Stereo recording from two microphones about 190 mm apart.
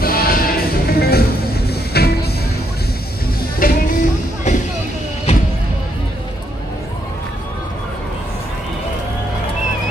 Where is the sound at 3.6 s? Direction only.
45° left (ahead or behind).